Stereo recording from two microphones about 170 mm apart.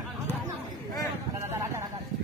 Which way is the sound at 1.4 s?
15° right (ahead or behind).